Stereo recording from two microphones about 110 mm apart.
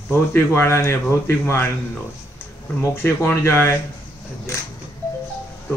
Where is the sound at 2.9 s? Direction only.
20° left (ahead or behind).